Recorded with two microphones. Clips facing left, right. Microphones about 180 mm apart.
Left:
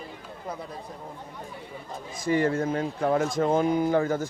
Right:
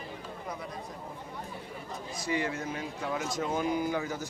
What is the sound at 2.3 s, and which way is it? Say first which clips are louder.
Speech: left 9 dB; 50° left (ahead or behind).